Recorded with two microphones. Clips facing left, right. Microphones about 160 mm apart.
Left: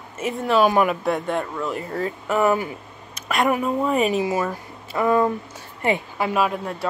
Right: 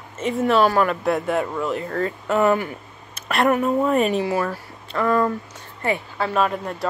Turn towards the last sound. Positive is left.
turn(degrees=0)  # may be behind; listen again after turning